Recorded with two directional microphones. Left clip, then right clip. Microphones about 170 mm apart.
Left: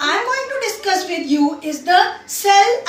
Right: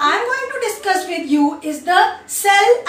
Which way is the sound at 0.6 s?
20° left (ahead or behind).